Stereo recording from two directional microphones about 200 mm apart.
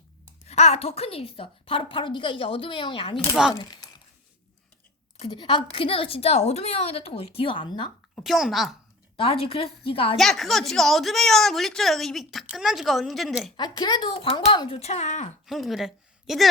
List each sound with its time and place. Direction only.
0.4 s a woman's voice: 30° left (ahead or behind)
3.5 s a sound: 20° left (ahead or behind)
5.2 s a woman's voice: 25° left (ahead or behind)
8.1 s speech: centre (ahead or behind)
9.1 s a woman's voice: 30° left (ahead or behind)
10.2 s a woman's voice: centre (ahead or behind)
13.6 s a woman's voice: 20° left (ahead or behind)
15.4 s speech: centre (ahead or behind)